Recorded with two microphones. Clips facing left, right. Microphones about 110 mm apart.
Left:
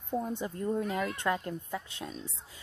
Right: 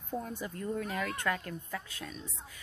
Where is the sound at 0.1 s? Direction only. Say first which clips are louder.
Left 4 dB; 25° left (ahead or behind).